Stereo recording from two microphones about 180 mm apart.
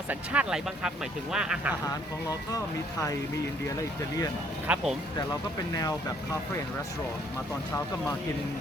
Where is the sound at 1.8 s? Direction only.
20° left (ahead or behind).